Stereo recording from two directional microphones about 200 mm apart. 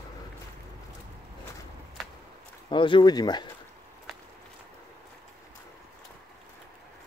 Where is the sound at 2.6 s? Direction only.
25° left (ahead or behind).